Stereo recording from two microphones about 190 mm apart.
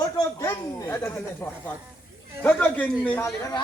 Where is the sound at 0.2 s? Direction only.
15° left (ahead or behind).